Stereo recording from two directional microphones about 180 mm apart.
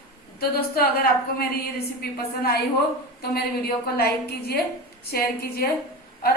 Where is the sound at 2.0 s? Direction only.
60° left (ahead or behind).